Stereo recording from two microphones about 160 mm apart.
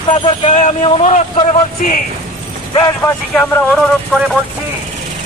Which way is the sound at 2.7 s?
25° left (ahead or behind).